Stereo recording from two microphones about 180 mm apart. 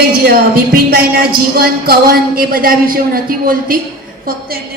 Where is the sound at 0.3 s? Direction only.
55° right (ahead or behind).